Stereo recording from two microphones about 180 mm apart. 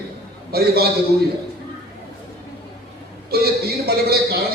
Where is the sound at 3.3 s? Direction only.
60° right (ahead or behind).